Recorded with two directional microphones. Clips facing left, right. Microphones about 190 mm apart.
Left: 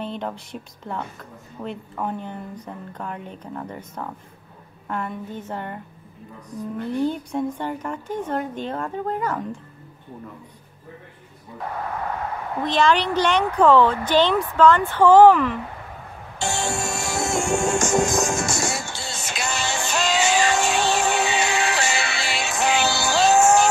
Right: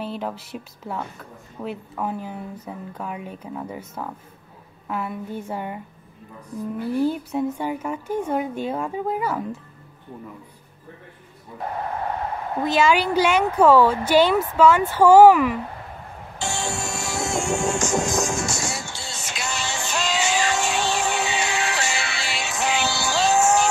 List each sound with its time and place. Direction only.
0.0 s a woman's voice: 5° right (ahead or behind)
12.6 s a woman's voice: 5° right (ahead or behind)
17.0 s music: 55° left (ahead or behind)